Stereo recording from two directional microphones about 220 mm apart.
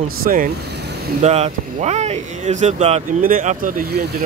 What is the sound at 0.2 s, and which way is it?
Speech, 40° right (ahead or behind).